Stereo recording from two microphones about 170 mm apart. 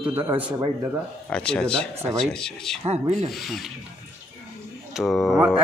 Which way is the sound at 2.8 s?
40° right (ahead or behind).